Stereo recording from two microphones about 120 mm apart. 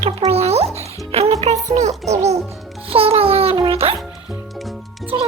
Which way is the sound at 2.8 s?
55° right (ahead or behind).